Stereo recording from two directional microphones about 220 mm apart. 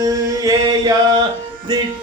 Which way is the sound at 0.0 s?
15° right (ahead or behind).